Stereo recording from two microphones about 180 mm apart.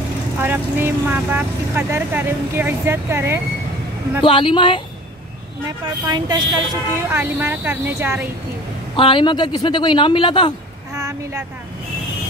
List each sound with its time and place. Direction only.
0.4 s speech: 10° right (ahead or behind)
4.2 s a woman's voice: 30° left (ahead or behind)
5.7 s speech: 20° right (ahead or behind)
7.1 s speech: 10° right (ahead or behind)
8.9 s a woman's voice: 30° left (ahead or behind)
11.0 s vehicle: 15° right (ahead or behind)